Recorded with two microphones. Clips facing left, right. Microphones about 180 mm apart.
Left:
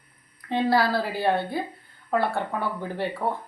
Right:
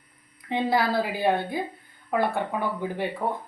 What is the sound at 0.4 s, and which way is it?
Speech, 15° right (ahead or behind).